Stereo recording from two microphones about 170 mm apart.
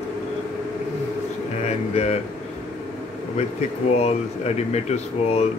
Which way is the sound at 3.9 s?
40° left (ahead or behind).